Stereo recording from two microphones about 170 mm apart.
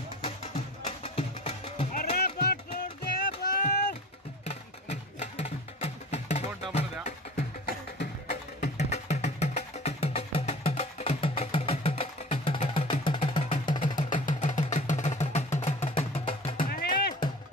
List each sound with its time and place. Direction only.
0.8 s music: 35° left (ahead or behind)
2.1 s music: 65° left (ahead or behind)
4.5 s music: 40° left (ahead or behind)
7.6 s music: 65° left (ahead or behind)
8.5 s music: 40° left (ahead or behind)
13.7 s music: 50° left (ahead or behind)
16.6 s music: 60° left (ahead or behind)